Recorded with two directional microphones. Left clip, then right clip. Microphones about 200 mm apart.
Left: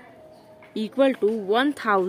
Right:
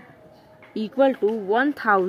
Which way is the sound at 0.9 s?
25° left (ahead or behind).